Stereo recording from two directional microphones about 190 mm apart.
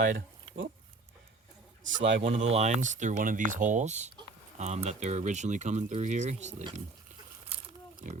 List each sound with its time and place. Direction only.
1.8 s a man's voice: 75° right (ahead or behind)
2.2 s speech: 35° right (ahead or behind)